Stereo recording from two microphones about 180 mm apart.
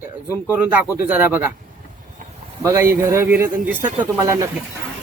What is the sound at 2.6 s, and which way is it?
A man's voice, 15° right (ahead or behind).